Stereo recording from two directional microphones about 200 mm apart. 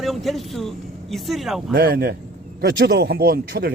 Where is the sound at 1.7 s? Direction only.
50° right (ahead or behind).